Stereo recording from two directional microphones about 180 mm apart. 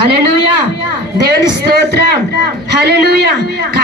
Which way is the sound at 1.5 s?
65° right (ahead or behind).